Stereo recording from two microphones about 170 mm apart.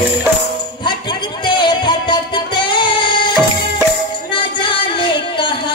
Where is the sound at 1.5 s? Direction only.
30° left (ahead or behind).